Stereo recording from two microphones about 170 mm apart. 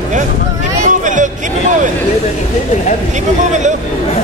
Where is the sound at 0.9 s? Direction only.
50° right (ahead or behind).